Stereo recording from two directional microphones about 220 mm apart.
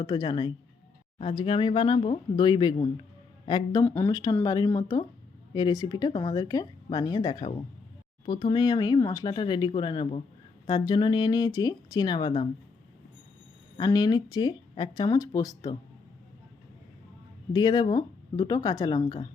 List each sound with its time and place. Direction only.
0.0 s speech: 20° left (ahead or behind)
13.7 s speech: 20° left (ahead or behind)
17.5 s speech: 20° left (ahead or behind)